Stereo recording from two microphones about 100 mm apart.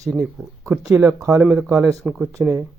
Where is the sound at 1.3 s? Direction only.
5° right (ahead or behind).